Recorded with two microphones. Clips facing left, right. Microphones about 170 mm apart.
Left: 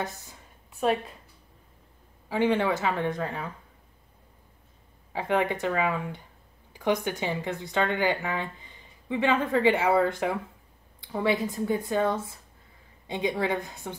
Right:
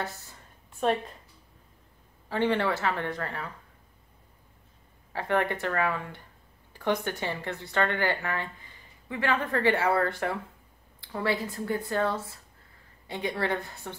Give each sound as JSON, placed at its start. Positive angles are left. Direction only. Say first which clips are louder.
{"t": 0.0, "sound": "speech", "louder": "left 2 dB", "side_deg": 15}
{"t": 0.7, "sound": "a woman's voice", "louder": "left 1 dB", "side_deg": 5}
{"t": 2.2, "sound": "speech", "louder": "left 2 dB", "side_deg": 10}
{"t": 5.1, "sound": "speech", "louder": "left 1 dB", "side_deg": 15}